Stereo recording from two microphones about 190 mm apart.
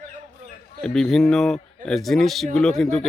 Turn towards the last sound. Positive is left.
turn(degrees=0)  # may be behind; listen again after turning